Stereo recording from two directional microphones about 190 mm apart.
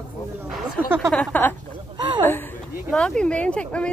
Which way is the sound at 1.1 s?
5° left (ahead or behind).